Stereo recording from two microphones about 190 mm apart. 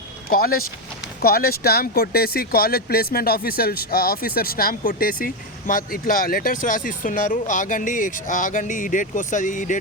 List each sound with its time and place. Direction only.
0.3 s speech: 50° left (ahead or behind)